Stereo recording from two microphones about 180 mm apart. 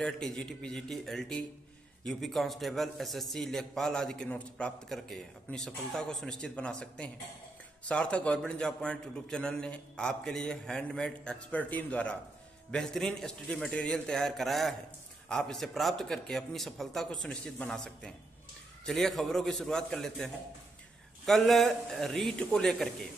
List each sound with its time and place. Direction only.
0.0 s a man's voice: 5° left (ahead or behind)